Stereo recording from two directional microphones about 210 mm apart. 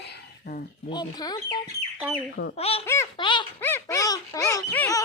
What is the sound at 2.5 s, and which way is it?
Speech, 30° left (ahead or behind).